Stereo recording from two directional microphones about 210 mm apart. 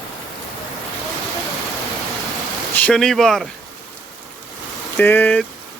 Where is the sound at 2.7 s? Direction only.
5° left (ahead or behind).